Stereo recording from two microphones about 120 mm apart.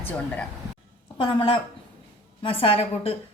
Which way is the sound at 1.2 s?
45° left (ahead or behind).